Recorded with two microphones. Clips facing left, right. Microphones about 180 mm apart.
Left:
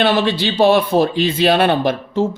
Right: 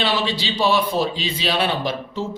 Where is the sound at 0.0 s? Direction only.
55° left (ahead or behind).